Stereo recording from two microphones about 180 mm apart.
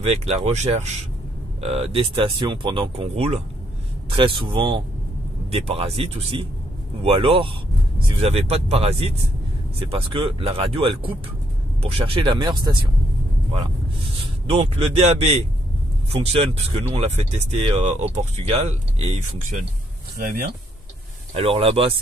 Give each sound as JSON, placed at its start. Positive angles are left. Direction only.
{"t": 0.0, "sound": "speech", "side_deg": -35}
{"t": 20.2, "sound": "speech", "side_deg": -50}
{"t": 21.3, "sound": "speech", "side_deg": -30}